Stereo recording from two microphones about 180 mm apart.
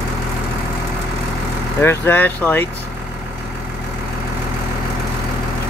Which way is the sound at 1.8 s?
10° left (ahead or behind).